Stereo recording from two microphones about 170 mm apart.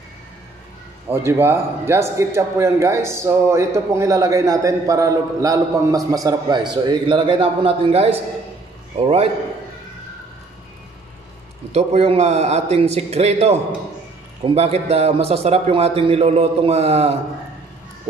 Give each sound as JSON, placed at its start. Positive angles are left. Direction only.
{"t": 1.0, "sound": "a man's voice", "side_deg": -15}
{"t": 11.7, "sound": "a man's voice", "side_deg": -35}